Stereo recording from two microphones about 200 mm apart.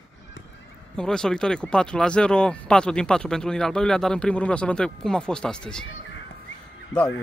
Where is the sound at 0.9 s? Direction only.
5° left (ahead or behind).